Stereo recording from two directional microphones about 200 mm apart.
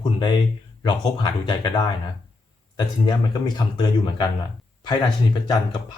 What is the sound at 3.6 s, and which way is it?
Speech, 20° left (ahead or behind).